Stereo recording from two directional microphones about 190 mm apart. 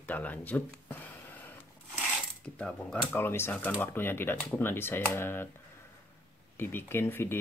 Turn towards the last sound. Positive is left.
turn(degrees=10)  # may be behind; listen again after turning